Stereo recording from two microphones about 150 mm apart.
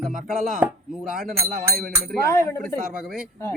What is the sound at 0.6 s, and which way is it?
Chopping, 10° right (ahead or behind).